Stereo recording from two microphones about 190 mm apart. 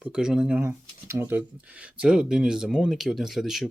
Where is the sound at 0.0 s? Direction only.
5° right (ahead or behind).